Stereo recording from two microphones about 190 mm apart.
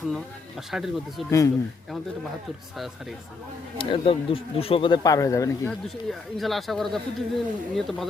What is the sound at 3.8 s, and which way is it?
Speech, 30° left (ahead or behind).